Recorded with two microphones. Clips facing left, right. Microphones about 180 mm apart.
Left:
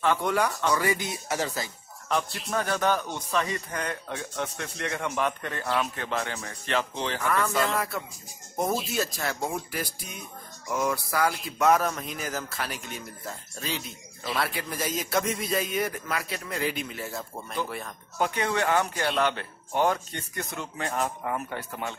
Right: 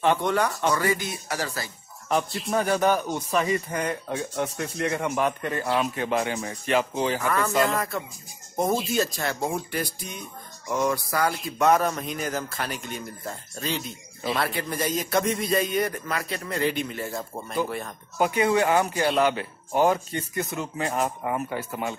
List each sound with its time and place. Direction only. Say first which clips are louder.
0.2 s speech: right 2 dB; 5° left (ahead or behind)
2.0 s a man's voice: right 3 dB; 15° right (ahead or behind); by 17.6 s 5° left (ahead or behind)
18.1 s speech: right 5 dB; 10° right (ahead or behind)